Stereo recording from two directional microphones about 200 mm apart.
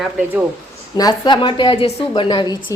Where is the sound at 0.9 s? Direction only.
20° left (ahead or behind).